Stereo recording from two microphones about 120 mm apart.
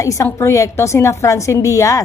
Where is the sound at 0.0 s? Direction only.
25° left (ahead or behind).